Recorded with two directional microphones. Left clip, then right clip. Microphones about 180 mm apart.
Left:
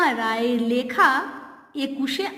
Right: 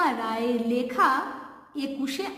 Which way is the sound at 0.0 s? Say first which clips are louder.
Left 4 dB; 25° left (ahead or behind).